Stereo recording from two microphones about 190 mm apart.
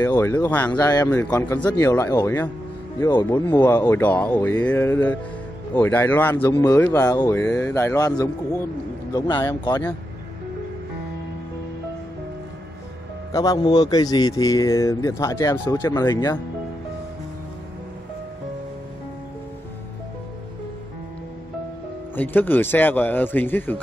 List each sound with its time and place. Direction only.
0.0 s speech: 15° left (ahead or behind)
13.3 s a man's voice: 20° left (ahead or behind)
22.1 s speech: 10° left (ahead or behind)